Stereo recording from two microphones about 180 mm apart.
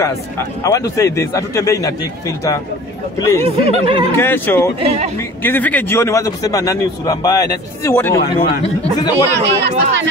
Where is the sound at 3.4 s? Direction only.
30° right (ahead or behind).